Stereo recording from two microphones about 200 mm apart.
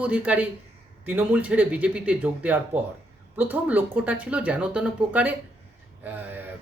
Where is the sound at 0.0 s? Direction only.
5° right (ahead or behind).